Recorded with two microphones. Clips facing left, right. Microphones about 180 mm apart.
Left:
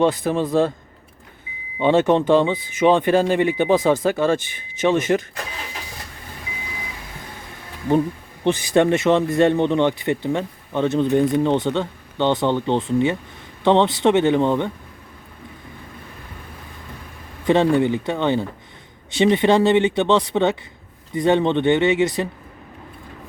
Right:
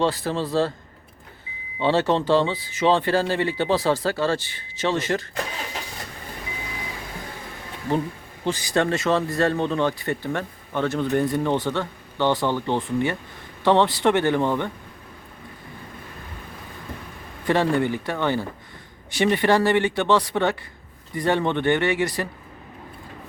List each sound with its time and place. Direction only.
0.0 s speech: 20° left (ahead or behind)
1.8 s speech: 20° left (ahead or behind)
8.4 s speech: 20° left (ahead or behind)
17.4 s speech: 20° left (ahead or behind)